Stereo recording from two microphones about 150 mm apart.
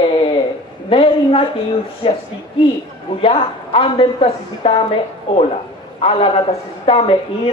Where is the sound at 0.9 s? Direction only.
35° left (ahead or behind).